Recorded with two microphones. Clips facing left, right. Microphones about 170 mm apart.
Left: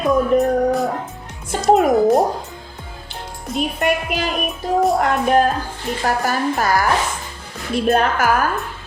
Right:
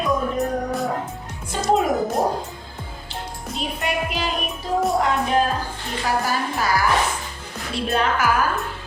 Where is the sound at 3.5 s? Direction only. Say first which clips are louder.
Left 6 dB; 55° left (ahead or behind).